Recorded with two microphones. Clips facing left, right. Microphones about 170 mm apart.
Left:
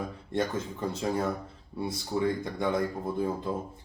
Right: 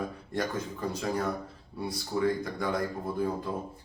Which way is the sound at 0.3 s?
25° left (ahead or behind).